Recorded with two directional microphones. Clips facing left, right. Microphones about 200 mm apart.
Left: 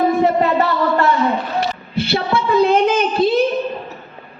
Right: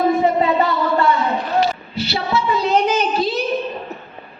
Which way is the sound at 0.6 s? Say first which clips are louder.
Left 1 dB; 80° left.